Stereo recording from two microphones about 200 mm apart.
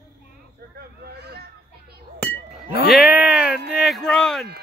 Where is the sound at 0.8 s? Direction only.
55° right (ahead or behind).